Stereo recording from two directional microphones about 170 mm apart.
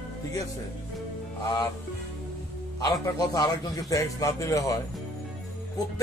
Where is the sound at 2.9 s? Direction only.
20° left (ahead or behind).